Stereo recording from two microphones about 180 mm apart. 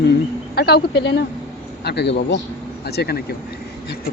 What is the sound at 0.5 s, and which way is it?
Speech, 60° left (ahead or behind).